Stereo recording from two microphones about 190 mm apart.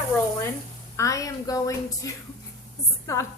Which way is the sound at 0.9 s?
15° left (ahead or behind).